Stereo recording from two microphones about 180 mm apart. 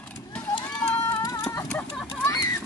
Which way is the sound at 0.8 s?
15° left (ahead or behind).